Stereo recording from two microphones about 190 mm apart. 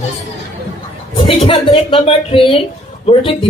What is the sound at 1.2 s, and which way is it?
Speech, 30° left (ahead or behind).